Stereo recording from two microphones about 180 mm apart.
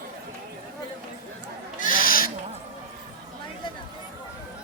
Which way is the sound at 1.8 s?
50° left (ahead or behind).